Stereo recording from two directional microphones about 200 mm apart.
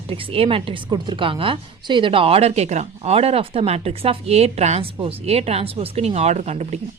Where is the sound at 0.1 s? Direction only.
30° right (ahead or behind).